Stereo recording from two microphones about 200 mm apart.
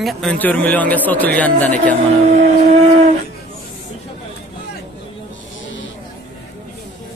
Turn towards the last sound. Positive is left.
turn(degrees=70)  # may be behind; listen again after turning